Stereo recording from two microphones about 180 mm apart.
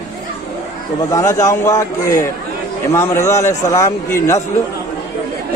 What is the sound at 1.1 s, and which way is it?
A man's voice, 20° left (ahead or behind).